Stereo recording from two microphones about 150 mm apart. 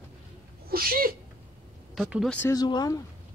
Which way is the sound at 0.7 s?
75° right (ahead or behind).